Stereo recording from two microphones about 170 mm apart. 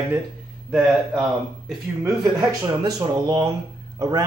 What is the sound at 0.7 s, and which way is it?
Speech, centre (ahead or behind).